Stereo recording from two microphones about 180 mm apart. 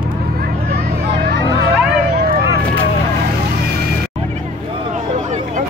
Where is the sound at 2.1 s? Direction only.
55° right (ahead or behind).